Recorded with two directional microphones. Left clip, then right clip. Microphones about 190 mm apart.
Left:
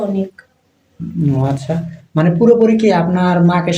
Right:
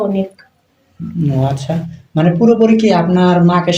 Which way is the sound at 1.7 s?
20° left (ahead or behind).